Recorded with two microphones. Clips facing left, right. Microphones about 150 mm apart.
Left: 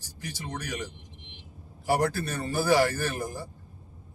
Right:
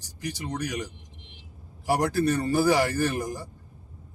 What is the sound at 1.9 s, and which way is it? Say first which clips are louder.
A man's voice: right 3 dB; 15° right (ahead or behind).